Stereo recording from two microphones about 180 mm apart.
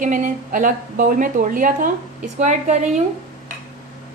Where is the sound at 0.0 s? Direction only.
45° right (ahead or behind).